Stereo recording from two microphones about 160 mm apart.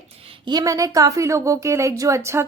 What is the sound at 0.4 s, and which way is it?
A woman's voice, 25° right (ahead or behind).